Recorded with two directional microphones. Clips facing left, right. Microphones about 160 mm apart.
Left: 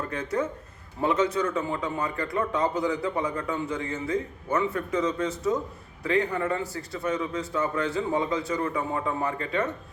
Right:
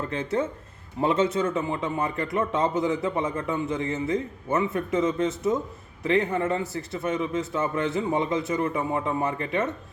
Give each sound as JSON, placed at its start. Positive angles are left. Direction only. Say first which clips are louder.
{"t": 0.1, "sound": "a man's voice", "louder": "right 1 dB", "side_deg": -25}